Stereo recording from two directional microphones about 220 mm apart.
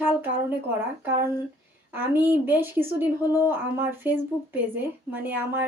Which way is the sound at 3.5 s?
10° right (ahead or behind).